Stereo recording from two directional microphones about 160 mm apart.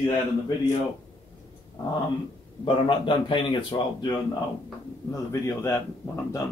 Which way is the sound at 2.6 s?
30° left (ahead or behind).